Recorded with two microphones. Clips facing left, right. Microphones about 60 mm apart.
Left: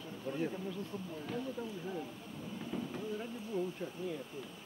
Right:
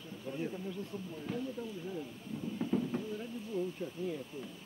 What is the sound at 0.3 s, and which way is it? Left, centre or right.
Speech, centre.